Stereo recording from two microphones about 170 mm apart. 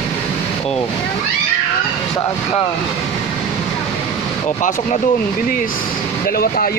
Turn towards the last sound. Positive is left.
turn(degrees=60)  # may be behind; listen again after turning